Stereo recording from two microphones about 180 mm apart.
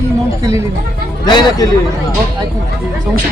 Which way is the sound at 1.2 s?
20° left (ahead or behind).